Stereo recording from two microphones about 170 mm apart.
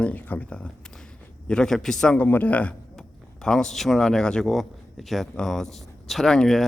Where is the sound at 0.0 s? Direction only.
10° left (ahead or behind).